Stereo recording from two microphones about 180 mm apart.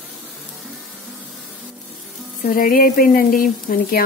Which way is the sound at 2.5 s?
50° left (ahead or behind).